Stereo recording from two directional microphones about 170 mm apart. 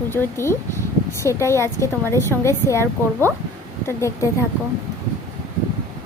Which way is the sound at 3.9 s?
15° left (ahead or behind).